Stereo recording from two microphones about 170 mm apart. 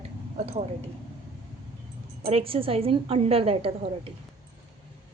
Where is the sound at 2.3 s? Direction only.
35° right (ahead or behind).